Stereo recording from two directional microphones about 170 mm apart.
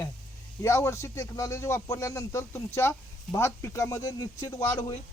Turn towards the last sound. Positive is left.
turn(degrees=20)  # may be behind; listen again after turning